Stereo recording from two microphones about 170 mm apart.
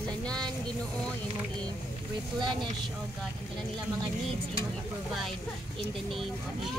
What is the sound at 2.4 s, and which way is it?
Speech, 30° right (ahead or behind).